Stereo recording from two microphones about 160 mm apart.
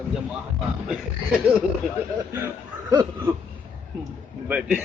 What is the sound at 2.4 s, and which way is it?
Speech, 20° right (ahead or behind).